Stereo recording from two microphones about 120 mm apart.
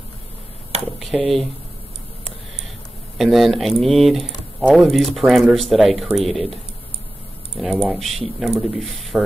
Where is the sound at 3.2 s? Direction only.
Centre (ahead or behind).